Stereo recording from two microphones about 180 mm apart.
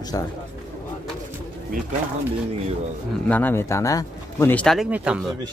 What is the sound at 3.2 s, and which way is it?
Speech, 10° left (ahead or behind).